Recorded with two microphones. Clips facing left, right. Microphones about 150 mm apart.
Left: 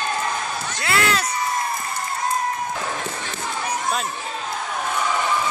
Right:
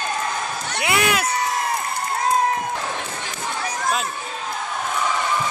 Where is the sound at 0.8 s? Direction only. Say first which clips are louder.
Right 1 dB; 15° right (ahead or behind).